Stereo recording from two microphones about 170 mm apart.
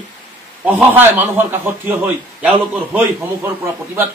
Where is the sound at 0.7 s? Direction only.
10° right (ahead or behind).